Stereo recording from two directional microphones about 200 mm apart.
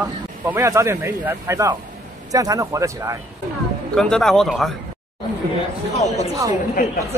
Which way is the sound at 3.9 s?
5° left (ahead or behind).